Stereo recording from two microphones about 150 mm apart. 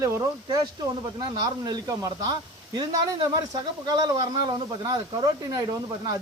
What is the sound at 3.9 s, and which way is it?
Speech, 25° right (ahead or behind).